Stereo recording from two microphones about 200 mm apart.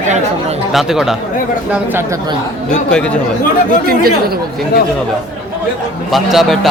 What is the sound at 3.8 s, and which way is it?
Speech, 50° right (ahead or behind).